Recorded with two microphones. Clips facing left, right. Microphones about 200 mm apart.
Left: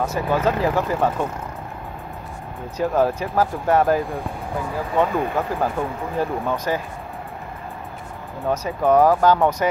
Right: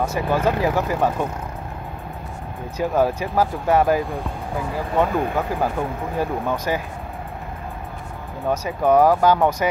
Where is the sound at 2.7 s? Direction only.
5° right (ahead or behind).